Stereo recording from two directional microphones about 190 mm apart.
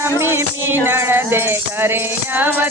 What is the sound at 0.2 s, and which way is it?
Music, 10° right (ahead or behind).